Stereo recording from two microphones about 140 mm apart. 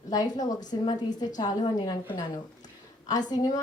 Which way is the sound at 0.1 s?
30° left (ahead or behind).